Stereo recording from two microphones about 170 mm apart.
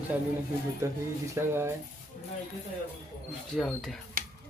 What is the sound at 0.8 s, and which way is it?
Speech, 15° right (ahead or behind).